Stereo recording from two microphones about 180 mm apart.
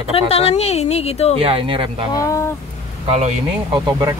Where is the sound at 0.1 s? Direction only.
35° left (ahead or behind).